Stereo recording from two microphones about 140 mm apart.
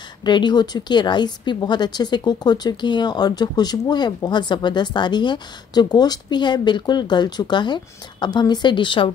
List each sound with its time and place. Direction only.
0.2 s a woman's voice: 30° left (ahead or behind)